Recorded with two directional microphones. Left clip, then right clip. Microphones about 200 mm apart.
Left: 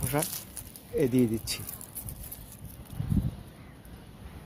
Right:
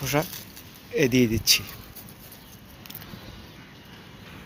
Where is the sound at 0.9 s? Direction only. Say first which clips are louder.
Right 4 dB; 5° left (ahead or behind).